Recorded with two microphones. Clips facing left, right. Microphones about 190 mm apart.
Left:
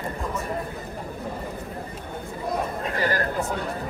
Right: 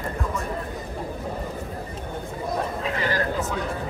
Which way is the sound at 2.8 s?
45° left (ahead or behind).